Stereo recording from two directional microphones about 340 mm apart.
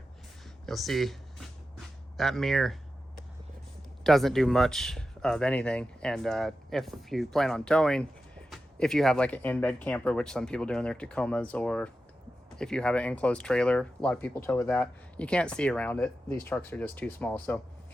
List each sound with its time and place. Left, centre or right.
0.6 s speech: centre
4.0 s speech: centre